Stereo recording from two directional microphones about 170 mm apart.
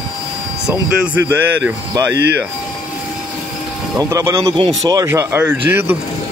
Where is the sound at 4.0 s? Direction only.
20° right (ahead or behind).